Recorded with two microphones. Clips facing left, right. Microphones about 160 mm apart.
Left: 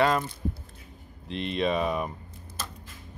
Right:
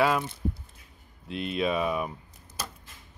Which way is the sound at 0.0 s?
5° right (ahead or behind).